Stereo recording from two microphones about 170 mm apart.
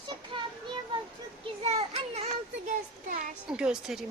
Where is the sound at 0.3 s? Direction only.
30° right (ahead or behind).